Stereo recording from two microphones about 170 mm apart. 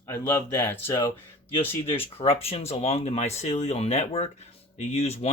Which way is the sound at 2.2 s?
35° left (ahead or behind).